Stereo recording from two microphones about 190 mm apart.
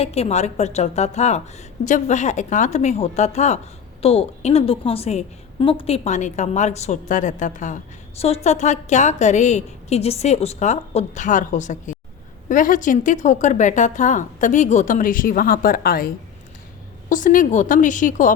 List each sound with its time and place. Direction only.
0.0 s a woman's voice: 35° left (ahead or behind)